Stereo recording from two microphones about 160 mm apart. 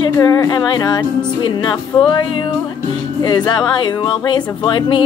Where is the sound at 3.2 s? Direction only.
25° left (ahead or behind).